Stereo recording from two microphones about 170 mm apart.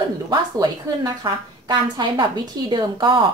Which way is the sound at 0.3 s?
25° right (ahead or behind).